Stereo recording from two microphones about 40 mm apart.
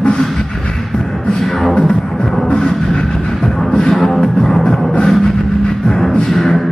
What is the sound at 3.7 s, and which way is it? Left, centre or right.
Music, centre.